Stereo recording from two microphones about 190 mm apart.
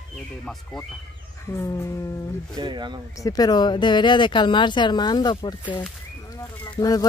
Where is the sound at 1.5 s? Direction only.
15° left (ahead or behind).